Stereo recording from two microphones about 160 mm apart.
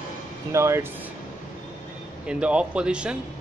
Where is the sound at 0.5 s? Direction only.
15° right (ahead or behind).